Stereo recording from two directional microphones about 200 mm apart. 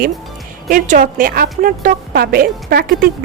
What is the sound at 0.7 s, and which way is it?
A woman's voice, 45° right (ahead or behind).